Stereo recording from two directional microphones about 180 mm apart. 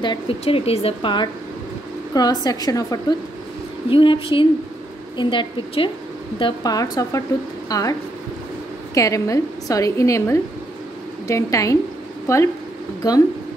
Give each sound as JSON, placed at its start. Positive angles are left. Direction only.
{"t": 0.0, "sound": "speech", "side_deg": 30}
{"t": 8.9, "sound": "a woman's voice", "side_deg": 20}